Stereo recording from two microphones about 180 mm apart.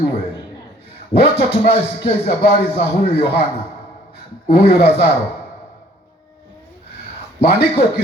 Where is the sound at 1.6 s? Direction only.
30° left (ahead or behind).